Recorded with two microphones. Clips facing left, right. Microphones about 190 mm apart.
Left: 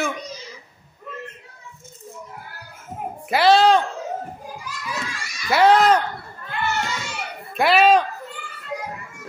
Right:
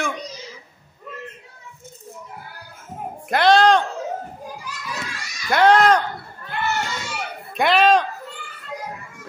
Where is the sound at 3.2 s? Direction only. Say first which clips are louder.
Even; 5° left (ahead or behind).